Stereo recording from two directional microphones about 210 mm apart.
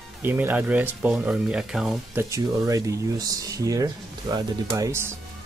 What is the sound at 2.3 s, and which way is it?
Speech, 15° right (ahead or behind).